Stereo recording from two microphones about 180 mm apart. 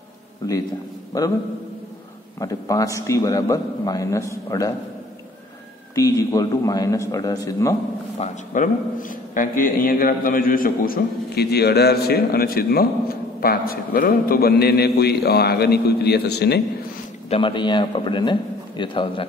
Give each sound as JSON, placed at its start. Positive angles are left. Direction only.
{"t": 2.4, "sound": "a man's voice", "side_deg": 20}
{"t": 5.9, "sound": "a man's voice", "side_deg": 20}
{"t": 8.2, "sound": "a man's voice", "side_deg": 45}
{"t": 17.3, "sound": "a man's voice", "side_deg": 25}